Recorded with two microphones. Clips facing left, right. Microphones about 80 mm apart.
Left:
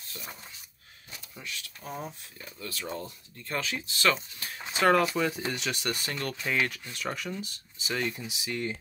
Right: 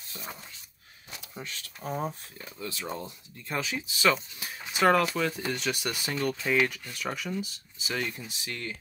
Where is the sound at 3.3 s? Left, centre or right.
Centre.